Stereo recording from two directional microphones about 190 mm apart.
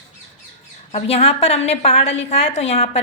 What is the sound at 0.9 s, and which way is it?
A woman's voice, 30° left (ahead or behind).